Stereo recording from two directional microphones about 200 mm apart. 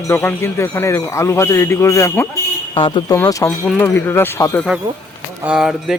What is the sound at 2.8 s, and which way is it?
Speech, 25° left (ahead or behind).